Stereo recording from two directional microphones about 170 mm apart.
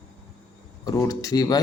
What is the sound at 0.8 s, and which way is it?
Speech, 20° left (ahead or behind).